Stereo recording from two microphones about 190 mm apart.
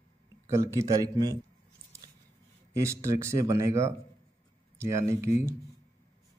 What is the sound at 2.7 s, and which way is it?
Speech, 15° right (ahead or behind).